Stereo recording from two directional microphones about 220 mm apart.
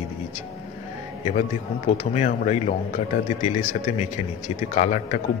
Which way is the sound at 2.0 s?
30° left (ahead or behind).